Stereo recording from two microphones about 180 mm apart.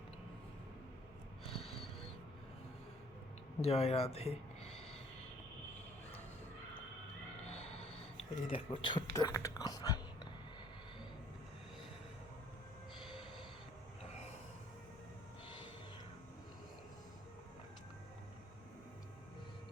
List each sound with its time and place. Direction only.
1.5 s a sound: 30° left (ahead or behind)
3.6 s a man's voice: 35° left (ahead or behind)
7.5 s speech: 35° left (ahead or behind)